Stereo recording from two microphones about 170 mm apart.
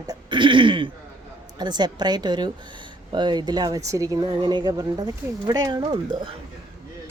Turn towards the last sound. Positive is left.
turn(degrees=-25)  # may be behind; listen again after turning